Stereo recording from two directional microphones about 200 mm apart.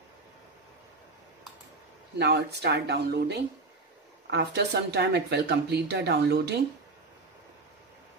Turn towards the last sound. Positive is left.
turn(degrees=-55)  # may be behind; listen again after turning